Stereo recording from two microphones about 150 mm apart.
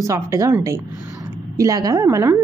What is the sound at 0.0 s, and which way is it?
A woman's voice, 20° right (ahead or behind).